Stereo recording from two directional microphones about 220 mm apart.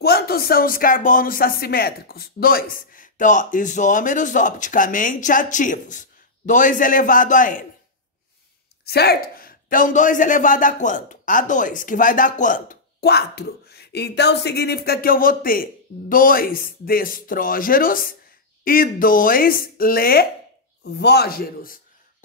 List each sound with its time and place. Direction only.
0.0 s a man's voice: 45° left (ahead or behind)
8.8 s a man's voice: 45° left (ahead or behind)